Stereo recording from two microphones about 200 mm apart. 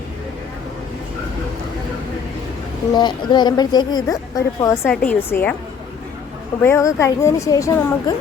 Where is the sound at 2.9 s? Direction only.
20° left (ahead or behind).